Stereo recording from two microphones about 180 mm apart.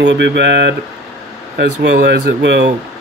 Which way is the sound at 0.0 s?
75° right (ahead or behind).